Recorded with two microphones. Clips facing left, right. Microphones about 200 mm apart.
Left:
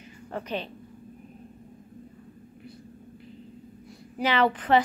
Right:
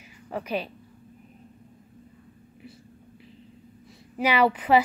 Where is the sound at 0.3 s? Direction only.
10° right (ahead or behind).